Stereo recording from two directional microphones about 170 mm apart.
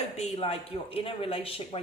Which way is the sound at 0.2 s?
35° left (ahead or behind).